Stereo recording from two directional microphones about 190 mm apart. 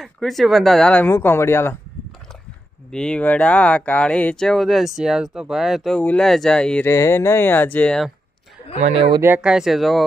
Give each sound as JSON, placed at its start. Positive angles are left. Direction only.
{"t": 0.0, "sound": "speech", "side_deg": 0}
{"t": 2.9, "sound": "speech", "side_deg": 5}
{"t": 8.8, "sound": "speech", "side_deg": -30}
{"t": 9.2, "sound": "speech", "side_deg": -5}